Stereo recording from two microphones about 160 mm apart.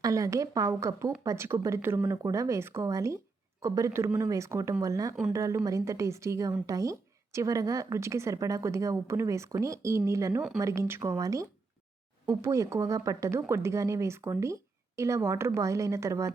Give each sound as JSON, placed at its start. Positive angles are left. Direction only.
{"t": 0.0, "sound": "speech", "side_deg": -20}